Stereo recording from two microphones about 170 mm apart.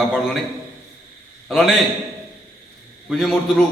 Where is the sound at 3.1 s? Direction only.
Centre (ahead or behind).